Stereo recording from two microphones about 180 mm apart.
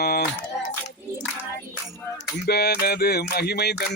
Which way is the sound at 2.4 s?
65° left (ahead or behind).